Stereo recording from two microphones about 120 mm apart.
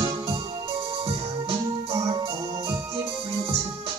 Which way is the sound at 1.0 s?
45° right (ahead or behind).